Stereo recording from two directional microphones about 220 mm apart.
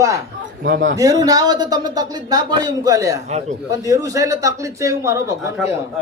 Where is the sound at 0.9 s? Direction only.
15° right (ahead or behind).